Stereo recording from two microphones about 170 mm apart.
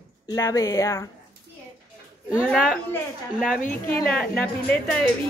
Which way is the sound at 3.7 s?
10° left (ahead or behind).